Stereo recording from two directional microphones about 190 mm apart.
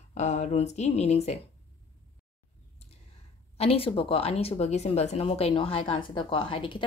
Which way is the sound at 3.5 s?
30° left (ahead or behind).